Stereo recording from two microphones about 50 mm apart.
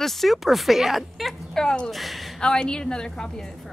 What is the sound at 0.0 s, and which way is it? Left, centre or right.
A man's voice, centre.